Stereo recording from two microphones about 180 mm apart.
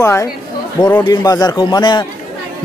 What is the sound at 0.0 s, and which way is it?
A man's voice, 15° left (ahead or behind).